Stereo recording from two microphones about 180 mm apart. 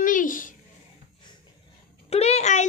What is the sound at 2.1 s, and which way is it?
Speech, 35° left (ahead or behind).